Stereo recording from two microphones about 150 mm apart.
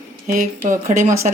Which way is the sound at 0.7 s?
20° right (ahead or behind).